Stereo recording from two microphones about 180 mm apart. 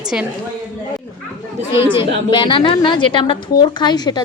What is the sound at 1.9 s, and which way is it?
A woman's voice, 25° left (ahead or behind).